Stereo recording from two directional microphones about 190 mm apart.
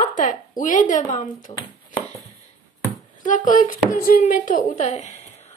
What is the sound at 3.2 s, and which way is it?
A woman's voice, 45° left (ahead or behind).